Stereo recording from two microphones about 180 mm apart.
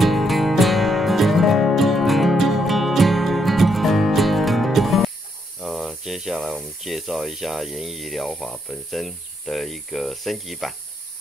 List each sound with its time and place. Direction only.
0.0 s music: centre (ahead or behind)
5.6 s speech: centre (ahead or behind)